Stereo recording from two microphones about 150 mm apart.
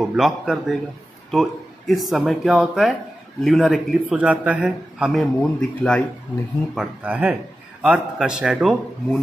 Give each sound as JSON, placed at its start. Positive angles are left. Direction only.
{"t": 0.0, "sound": "a man's voice", "side_deg": -5}
{"t": 7.0, "sound": "a man's voice", "side_deg": -10}